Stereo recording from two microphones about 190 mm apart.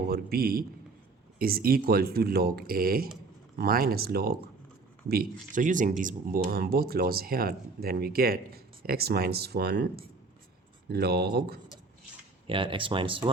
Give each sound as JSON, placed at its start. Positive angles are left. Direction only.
{"t": 0.1, "sound": "speech", "side_deg": -55}
{"t": 12.5, "sound": "speech", "side_deg": -25}